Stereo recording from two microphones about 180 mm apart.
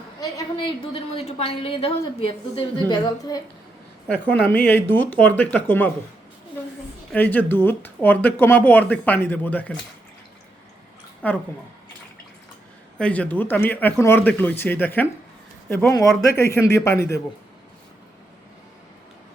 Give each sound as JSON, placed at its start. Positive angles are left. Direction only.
{"t": 0.2, "sound": "a woman's voice", "side_deg": 25}
{"t": 2.9, "sound": "a woman's voice", "side_deg": 20}
{"t": 4.1, "sound": "speech", "side_deg": 10}
{"t": 7.1, "sound": "speech", "side_deg": 10}
{"t": 11.2, "sound": "speech", "side_deg": 10}
{"t": 13.0, "sound": "speech", "side_deg": 5}
{"t": 16.3, "sound": "speech", "side_deg": 15}